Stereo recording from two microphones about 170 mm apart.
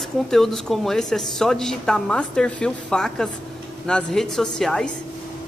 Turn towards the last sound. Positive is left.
turn(degrees=5)  # may be behind; listen again after turning